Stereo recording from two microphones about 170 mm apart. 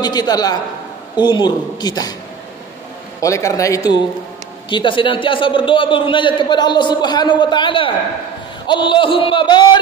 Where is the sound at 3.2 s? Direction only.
20° left (ahead or behind).